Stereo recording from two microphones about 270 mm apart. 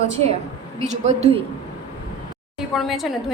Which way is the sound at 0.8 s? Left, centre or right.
Right.